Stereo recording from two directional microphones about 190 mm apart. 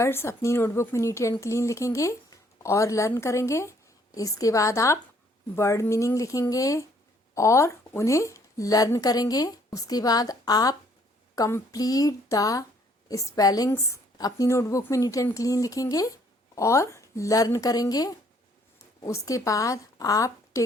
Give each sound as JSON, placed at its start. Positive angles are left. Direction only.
{"t": 0.0, "sound": "a woman's voice", "side_deg": 15}